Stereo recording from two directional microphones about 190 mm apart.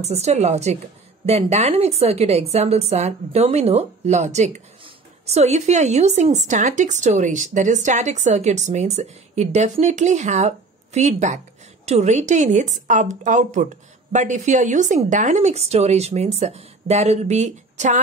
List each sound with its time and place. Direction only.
0.0 s speech: 35° right (ahead or behind)